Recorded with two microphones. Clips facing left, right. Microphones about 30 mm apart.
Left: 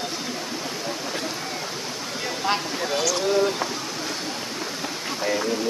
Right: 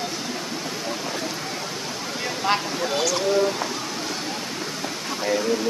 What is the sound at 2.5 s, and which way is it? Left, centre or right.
Speech, centre.